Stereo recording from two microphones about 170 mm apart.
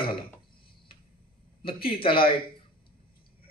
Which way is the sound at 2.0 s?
30° left (ahead or behind).